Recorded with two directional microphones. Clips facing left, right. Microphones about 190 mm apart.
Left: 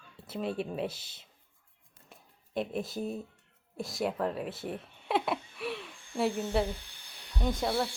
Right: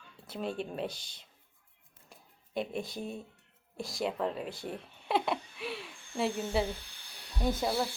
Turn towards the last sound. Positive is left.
turn(degrees=-5)  # may be behind; listen again after turning